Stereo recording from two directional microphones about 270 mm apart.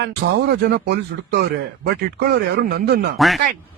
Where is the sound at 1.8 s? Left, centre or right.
Right.